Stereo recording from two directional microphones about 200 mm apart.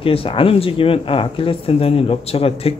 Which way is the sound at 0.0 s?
30° left (ahead or behind).